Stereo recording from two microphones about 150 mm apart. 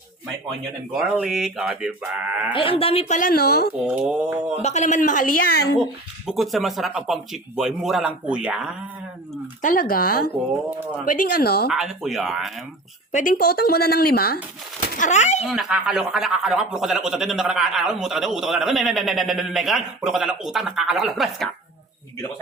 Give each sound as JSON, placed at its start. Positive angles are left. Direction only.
{"t": 0.9, "sound": "a man's voice", "side_deg": -5}
{"t": 2.5, "sound": "speech", "side_deg": 35}
{"t": 3.2, "sound": "speech", "side_deg": 80}
{"t": 4.6, "sound": "speech", "side_deg": 50}
{"t": 6.2, "sound": "a man's voice", "side_deg": 0}
{"t": 9.6, "sound": "speech", "side_deg": 65}
{"t": 10.7, "sound": "speech", "side_deg": -15}
{"t": 11.0, "sound": "speech", "side_deg": 60}
{"t": 11.7, "sound": "a man's voice", "side_deg": 0}
{"t": 13.1, "sound": "speech", "side_deg": 60}
{"t": 14.9, "sound": "speech", "side_deg": 55}
{"t": 15.4, "sound": "a man's voice", "side_deg": -5}